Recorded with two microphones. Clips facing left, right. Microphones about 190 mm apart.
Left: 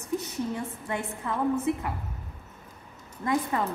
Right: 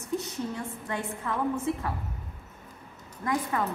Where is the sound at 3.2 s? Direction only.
20° left (ahead or behind).